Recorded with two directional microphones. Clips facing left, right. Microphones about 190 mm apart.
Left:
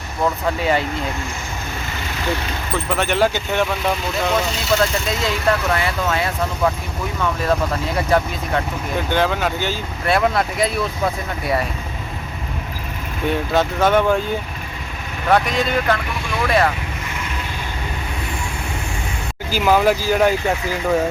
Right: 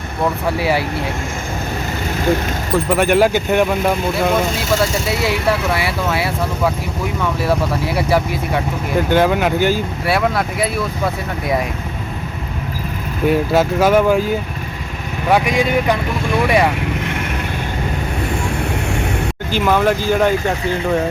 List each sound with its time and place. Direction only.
0.6 s speech: 10° right (ahead or behind)
2.7 s speech: 10° right (ahead or behind)
13.2 s speech: 5° right (ahead or behind)
15.3 s speech: 10° right (ahead or behind)
19.5 s speech: 5° left (ahead or behind)